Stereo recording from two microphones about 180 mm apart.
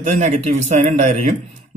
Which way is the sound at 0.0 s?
40° right (ahead or behind).